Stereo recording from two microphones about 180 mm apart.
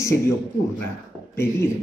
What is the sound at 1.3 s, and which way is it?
Speech, 15° left (ahead or behind).